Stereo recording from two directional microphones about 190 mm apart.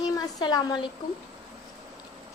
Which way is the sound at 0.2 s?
20° left (ahead or behind).